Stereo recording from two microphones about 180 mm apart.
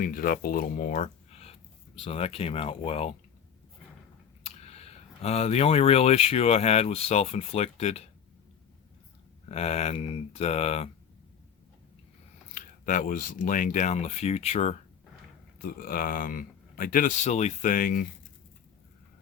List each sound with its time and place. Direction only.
0.0 s speech: 50° left (ahead or behind); by 3.2 s 30° left (ahead or behind)
4.4 s speech: 35° left (ahead or behind)
9.5 s speech: 35° left (ahead or behind)
12.5 s speech: 50° left (ahead or behind)
15.6 s speech: 50° left (ahead or behind)